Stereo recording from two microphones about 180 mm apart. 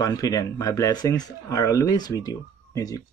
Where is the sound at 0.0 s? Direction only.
20° left (ahead or behind).